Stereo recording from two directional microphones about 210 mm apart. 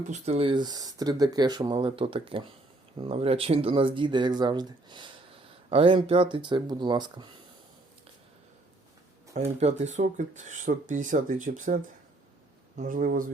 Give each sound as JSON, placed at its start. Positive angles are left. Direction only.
{"t": 0.1, "sound": "speech", "side_deg": -30}
{"t": 9.3, "sound": "speech", "side_deg": -30}